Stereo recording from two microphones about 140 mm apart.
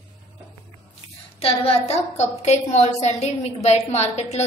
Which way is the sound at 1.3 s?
45° left (ahead or behind).